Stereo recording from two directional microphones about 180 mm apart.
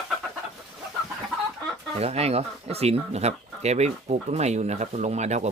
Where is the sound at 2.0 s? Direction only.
35° right (ahead or behind).